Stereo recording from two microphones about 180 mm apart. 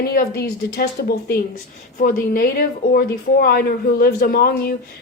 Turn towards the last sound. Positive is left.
turn(degrees=55)  # may be behind; listen again after turning